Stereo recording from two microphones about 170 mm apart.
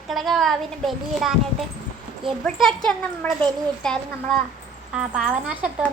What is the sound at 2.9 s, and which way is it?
A child's voice, 5° left (ahead or behind).